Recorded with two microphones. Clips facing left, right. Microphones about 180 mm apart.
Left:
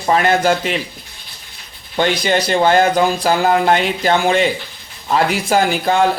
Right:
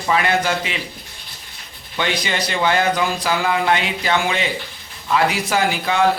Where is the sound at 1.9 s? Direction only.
45° left (ahead or behind).